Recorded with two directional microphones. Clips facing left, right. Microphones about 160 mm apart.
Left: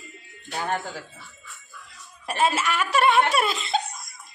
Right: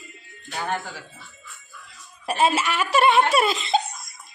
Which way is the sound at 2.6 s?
30° right (ahead or behind).